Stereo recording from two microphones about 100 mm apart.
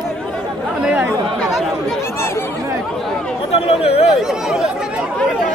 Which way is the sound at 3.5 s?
85° left.